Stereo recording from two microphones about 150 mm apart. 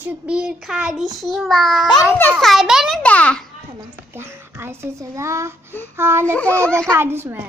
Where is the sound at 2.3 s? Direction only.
Centre (ahead or behind).